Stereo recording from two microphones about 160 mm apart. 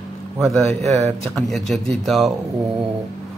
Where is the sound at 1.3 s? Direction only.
Centre (ahead or behind).